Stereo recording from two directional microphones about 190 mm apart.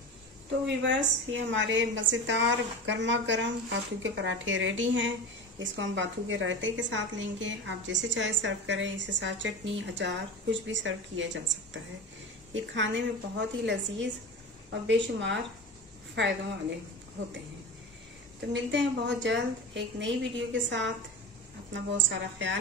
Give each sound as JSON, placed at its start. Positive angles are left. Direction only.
{"t": 0.5, "sound": "a woman's voice", "side_deg": -70}
{"t": 12.7, "sound": "a woman's voice", "side_deg": -70}
{"t": 18.5, "sound": "a woman's voice", "side_deg": -70}
{"t": 21.9, "sound": "a woman's voice", "side_deg": -75}